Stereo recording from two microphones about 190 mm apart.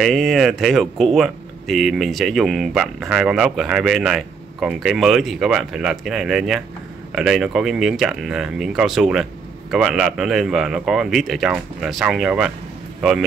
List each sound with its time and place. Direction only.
0.0 s speech: centre (ahead or behind)